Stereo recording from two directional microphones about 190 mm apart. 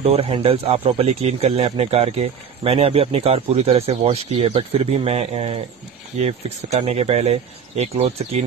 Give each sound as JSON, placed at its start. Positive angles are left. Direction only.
{"t": 0.0, "sound": "speech", "side_deg": -30}